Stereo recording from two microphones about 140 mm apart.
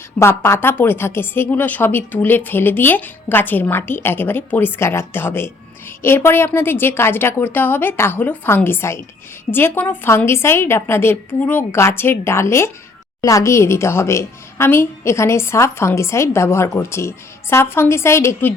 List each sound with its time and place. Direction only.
0.2 s a woman's voice: 20° left (ahead or behind)